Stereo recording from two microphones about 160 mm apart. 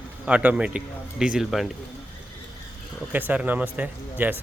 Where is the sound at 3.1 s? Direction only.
10° right (ahead or behind).